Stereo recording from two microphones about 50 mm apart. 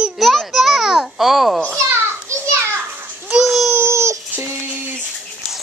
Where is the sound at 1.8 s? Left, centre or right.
Right.